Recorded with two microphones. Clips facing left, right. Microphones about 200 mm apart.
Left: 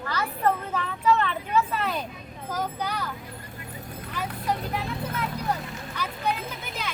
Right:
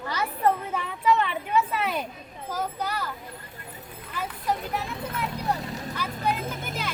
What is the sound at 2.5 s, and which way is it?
Speech, 5° right (ahead or behind).